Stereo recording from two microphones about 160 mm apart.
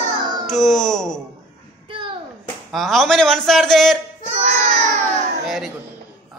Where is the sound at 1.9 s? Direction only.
30° right (ahead or behind).